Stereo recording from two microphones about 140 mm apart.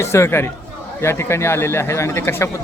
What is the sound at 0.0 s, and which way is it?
A man's voice, 20° left (ahead or behind).